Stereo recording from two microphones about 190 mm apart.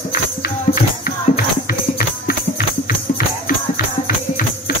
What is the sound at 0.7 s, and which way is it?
Music, 50° left (ahead or behind).